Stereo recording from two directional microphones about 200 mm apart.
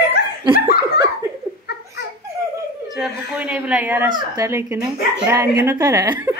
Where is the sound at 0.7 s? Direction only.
50° left (ahead or behind).